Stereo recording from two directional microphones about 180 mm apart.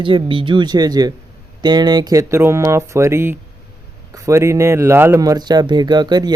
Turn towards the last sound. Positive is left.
turn(degrees=-25)  # may be behind; listen again after turning